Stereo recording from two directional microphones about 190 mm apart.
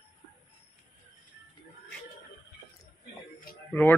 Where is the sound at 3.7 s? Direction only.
10° left (ahead or behind).